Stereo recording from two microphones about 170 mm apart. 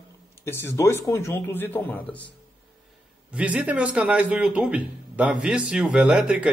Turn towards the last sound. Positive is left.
turn(degrees=-5)  # may be behind; listen again after turning